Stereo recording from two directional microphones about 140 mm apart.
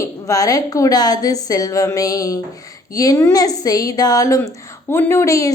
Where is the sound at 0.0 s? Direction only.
25° left (ahead or behind).